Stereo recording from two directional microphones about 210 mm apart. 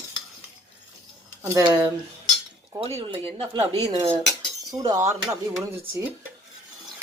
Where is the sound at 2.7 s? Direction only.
25° right (ahead or behind).